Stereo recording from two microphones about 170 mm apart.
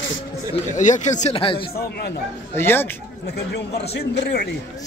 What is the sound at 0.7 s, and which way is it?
Speech, 45° left (ahead or behind).